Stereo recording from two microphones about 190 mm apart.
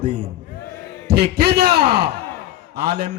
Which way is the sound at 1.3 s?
60° right (ahead or behind).